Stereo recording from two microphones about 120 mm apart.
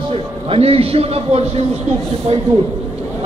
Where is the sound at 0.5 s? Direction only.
55° right (ahead or behind).